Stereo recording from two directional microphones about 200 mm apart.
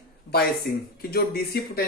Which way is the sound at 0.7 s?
45° left (ahead or behind).